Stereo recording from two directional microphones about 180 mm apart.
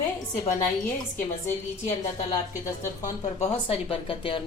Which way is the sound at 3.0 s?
40° left (ahead or behind).